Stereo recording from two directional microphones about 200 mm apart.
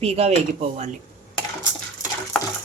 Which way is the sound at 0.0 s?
30° right (ahead or behind).